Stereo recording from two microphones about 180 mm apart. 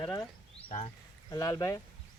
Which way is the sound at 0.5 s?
35° left (ahead or behind).